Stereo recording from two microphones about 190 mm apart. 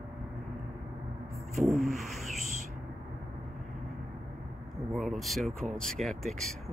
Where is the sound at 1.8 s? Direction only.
Centre (ahead or behind).